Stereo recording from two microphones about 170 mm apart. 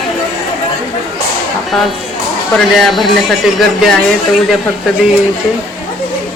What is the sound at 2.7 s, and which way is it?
Speech, centre (ahead or behind).